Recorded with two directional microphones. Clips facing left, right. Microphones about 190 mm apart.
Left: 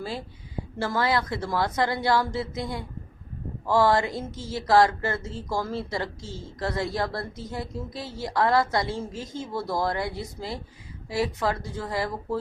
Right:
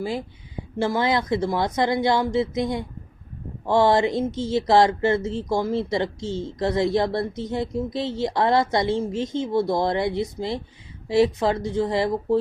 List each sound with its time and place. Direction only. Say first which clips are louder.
0.0 s speech: right 6 dB; 15° right (ahead or behind)